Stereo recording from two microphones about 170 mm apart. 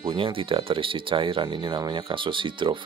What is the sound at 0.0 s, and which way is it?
Speech, 30° right (ahead or behind).